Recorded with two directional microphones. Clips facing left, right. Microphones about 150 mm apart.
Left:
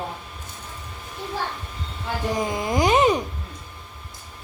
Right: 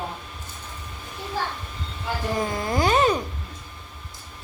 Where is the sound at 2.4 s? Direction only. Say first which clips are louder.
Left 2 dB; 15° left (ahead or behind).